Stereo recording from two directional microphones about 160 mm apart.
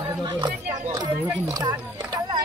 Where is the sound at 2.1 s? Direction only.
25° right (ahead or behind).